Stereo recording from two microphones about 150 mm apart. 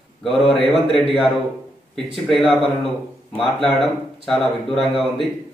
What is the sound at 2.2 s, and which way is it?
Speech, centre (ahead or behind).